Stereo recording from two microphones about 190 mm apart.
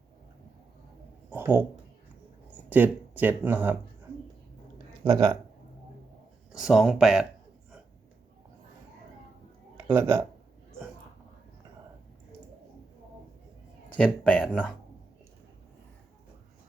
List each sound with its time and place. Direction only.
1.3 s a sound: 10° right (ahead or behind)
2.6 s speech: 10° right (ahead or behind)
5.0 s speech: 20° right (ahead or behind)
6.5 s speech: 5° right (ahead or behind)
9.8 s speech: 10° right (ahead or behind)
13.9 s speech: 5° left (ahead or behind)